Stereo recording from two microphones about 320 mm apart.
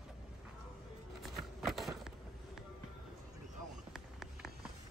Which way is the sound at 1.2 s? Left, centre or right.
Centre.